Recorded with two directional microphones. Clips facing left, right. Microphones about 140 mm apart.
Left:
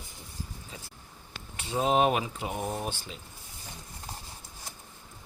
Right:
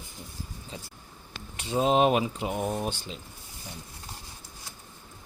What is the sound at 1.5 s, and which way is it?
Speech, 20° right (ahead or behind).